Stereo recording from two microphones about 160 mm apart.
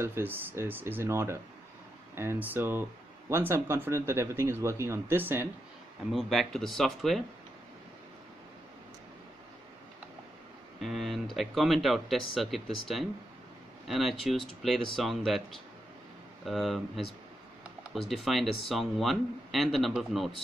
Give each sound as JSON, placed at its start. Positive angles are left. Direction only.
{"t": 0.0, "sound": "speech", "side_deg": -15}
{"t": 6.1, "sound": "a man's voice", "side_deg": 0}
{"t": 10.8, "sound": "a man's voice", "side_deg": 0}
{"t": 16.4, "sound": "a man's voice", "side_deg": 0}